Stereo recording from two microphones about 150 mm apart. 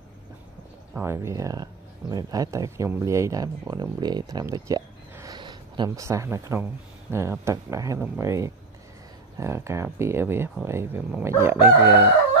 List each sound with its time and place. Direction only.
0.9 s speech: 15° right (ahead or behind)